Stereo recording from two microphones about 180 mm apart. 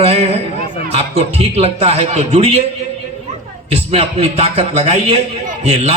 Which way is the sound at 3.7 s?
35° right (ahead or behind).